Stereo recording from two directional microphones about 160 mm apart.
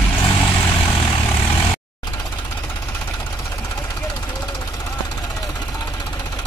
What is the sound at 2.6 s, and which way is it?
Vehicle, 10° left (ahead or behind).